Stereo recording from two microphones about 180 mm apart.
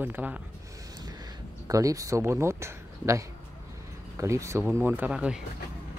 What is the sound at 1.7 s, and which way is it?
Speech, 20° right (ahead or behind).